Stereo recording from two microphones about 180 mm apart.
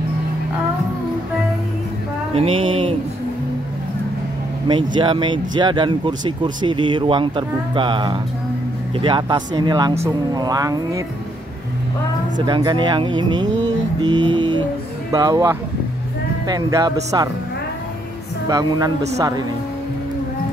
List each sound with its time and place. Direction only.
2.3 s speech: 30° right (ahead or behind)
4.6 s speech: 25° right (ahead or behind)
12.4 s speech: 25° right (ahead or behind)
18.5 s speech: 20° right (ahead or behind)